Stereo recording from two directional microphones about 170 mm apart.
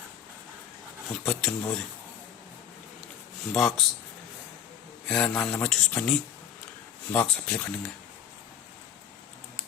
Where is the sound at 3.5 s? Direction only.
5° left (ahead or behind).